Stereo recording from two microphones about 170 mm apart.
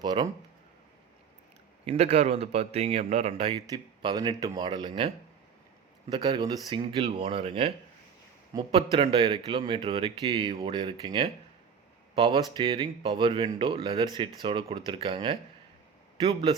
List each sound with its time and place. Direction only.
0.0 s speech: 25° right (ahead or behind)
1.8 s a man's voice: 40° right (ahead or behind)